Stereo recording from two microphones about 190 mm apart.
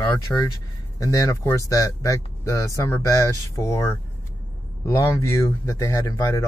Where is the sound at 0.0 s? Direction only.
15° left (ahead or behind).